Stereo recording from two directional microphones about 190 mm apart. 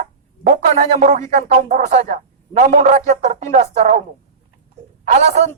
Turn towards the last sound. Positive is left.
turn(degrees=-35)  # may be behind; listen again after turning